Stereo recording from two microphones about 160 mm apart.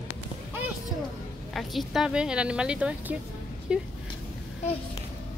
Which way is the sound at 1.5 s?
Centre (ahead or behind).